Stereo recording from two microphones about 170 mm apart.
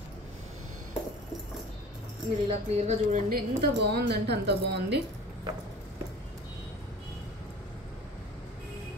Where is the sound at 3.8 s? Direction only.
75° right (ahead or behind).